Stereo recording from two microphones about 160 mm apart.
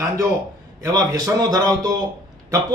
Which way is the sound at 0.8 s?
25° right (ahead or behind).